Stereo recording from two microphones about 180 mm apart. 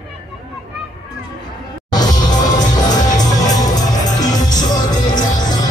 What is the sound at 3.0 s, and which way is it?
Music, 20° left (ahead or behind).